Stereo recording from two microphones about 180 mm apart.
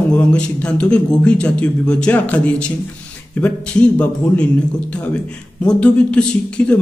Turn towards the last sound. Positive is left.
turn(degrees=5)  # may be behind; listen again after turning